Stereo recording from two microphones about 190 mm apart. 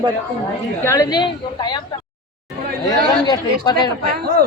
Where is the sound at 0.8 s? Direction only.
15° left (ahead or behind).